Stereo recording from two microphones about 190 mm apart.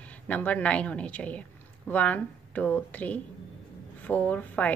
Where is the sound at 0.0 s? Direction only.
5° left (ahead or behind).